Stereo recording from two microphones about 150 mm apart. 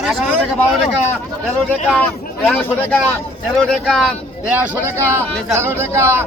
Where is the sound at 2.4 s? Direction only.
5° left (ahead or behind).